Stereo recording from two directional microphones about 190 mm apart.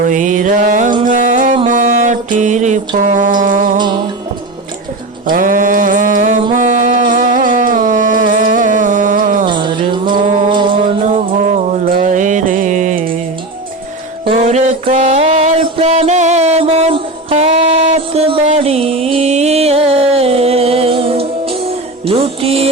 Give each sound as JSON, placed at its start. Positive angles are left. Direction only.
{"t": 0.0, "sound": "music", "side_deg": -45}
{"t": 3.8, "sound": "music", "side_deg": -25}
{"t": 5.2, "sound": "mantra", "side_deg": -45}
{"t": 6.6, "sound": "a sound", "side_deg": -40}
{"t": 9.5, "sound": "music", "side_deg": -25}
{"t": 11.9, "sound": "mantra", "side_deg": -40}
{"t": 14.3, "sound": "a sound", "side_deg": -35}